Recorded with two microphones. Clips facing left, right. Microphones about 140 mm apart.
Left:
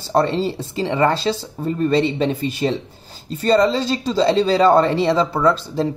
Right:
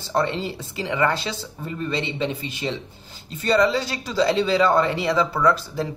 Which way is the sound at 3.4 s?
30° left (ahead or behind).